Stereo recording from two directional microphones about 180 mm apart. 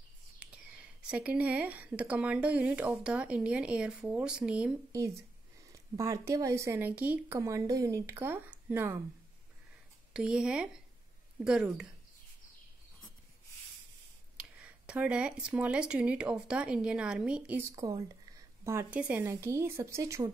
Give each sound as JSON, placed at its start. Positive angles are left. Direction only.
{"t": 0.4, "sound": "speech", "side_deg": -5}
{"t": 5.7, "sound": "speech", "side_deg": -15}
{"t": 10.1, "sound": "speech", "side_deg": -5}
{"t": 14.3, "sound": "speech", "side_deg": -5}
{"t": 17.7, "sound": "speech", "side_deg": -20}